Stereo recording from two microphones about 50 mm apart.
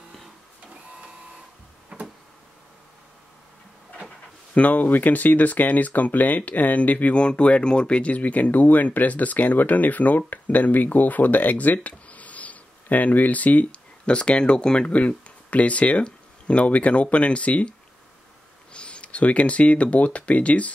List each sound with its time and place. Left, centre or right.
1.9 s tick-tock: centre
4.6 s speech: left